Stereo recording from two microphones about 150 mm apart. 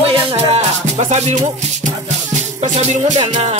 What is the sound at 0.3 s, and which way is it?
Music, 45° right (ahead or behind).